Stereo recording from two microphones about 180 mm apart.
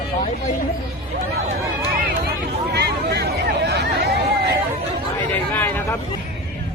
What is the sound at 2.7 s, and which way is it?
Hubbub, 65° right (ahead or behind).